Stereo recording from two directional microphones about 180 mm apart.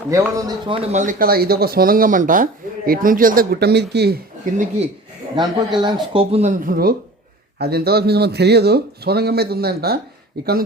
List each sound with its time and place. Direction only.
0.1 s speech: 20° right (ahead or behind)
0.9 s speech: 45° right (ahead or behind); by 4.2 s 65° right (ahead or behind)
5.4 s speech: 25° right (ahead or behind)
6.1 s speech: 35° right (ahead or behind)
6.7 s a man's voice: 55° right (ahead or behind)